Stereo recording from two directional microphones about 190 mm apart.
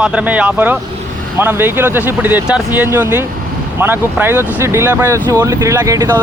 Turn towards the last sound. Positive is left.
turn(degrees=-15)  # may be behind; listen again after turning